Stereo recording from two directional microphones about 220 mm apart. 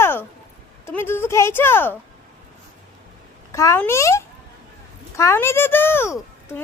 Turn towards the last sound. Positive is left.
turn(degrees=10)  # may be behind; listen again after turning